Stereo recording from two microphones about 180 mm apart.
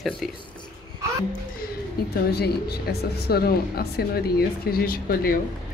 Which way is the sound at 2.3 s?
60° left (ahead or behind).